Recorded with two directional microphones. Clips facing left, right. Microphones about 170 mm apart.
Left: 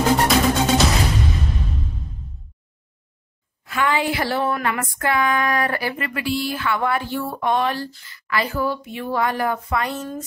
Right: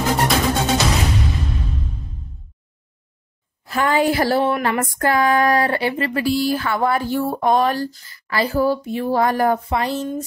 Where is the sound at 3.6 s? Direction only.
40° right (ahead or behind).